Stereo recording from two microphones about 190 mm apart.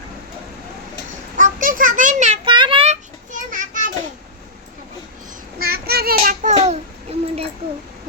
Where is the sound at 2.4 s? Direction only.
25° right (ahead or behind); by 3.9 s 40° right (ahead or behind).